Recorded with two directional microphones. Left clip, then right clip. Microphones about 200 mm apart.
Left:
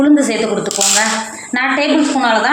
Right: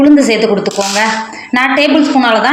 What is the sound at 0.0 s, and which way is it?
A woman's voice, 40° right (ahead or behind).